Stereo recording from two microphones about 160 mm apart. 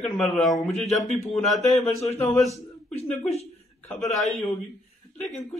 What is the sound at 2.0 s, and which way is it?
Speech, 40° left (ahead or behind).